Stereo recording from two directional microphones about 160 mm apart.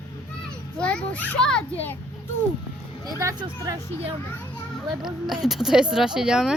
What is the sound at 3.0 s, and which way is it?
Speech, 20° right (ahead or behind).